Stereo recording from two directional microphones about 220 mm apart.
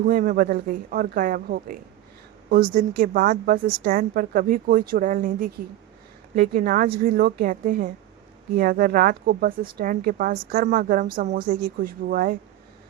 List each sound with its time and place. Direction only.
0.0 s speech: 40° right (ahead or behind)